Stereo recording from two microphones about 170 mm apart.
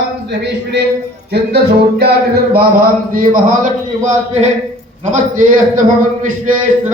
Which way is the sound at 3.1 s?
55° right (ahead or behind).